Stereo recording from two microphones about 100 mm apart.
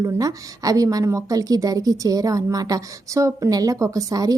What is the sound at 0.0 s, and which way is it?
A woman's voice, 35° right (ahead or behind).